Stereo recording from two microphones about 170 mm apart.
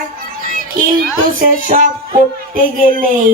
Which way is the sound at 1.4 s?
50° right (ahead or behind).